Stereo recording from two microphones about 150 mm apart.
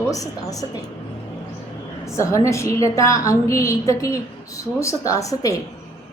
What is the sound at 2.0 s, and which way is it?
A woman's voice, 20° left (ahead or behind).